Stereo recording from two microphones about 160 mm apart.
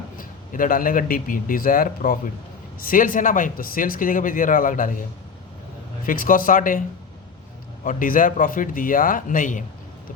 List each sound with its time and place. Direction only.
0.2 s speech: 60° left (ahead or behind)
6.1 s speech: 60° left (ahead or behind)
7.9 s speech: 55° left (ahead or behind)